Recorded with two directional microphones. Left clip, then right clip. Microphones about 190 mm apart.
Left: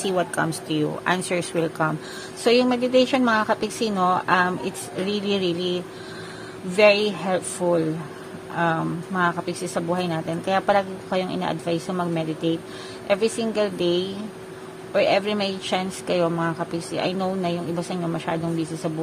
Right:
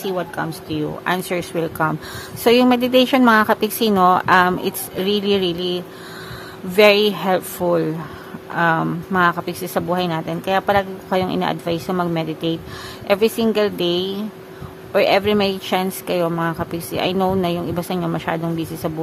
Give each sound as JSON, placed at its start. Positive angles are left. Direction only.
{"t": 0.0, "sound": "a woman's voice", "side_deg": -5}